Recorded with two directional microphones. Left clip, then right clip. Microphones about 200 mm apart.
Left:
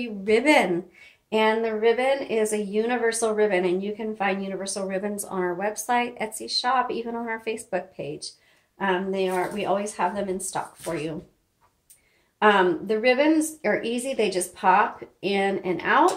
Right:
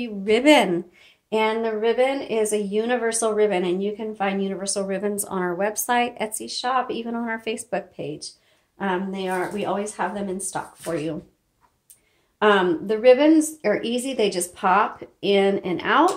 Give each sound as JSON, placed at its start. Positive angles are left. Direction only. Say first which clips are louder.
{"t": 0.0, "sound": "a woman's voice", "louder": "right 2 dB", "side_deg": -40}
{"t": 12.4, "sound": "a woman's voice", "louder": "right 1 dB", "side_deg": -40}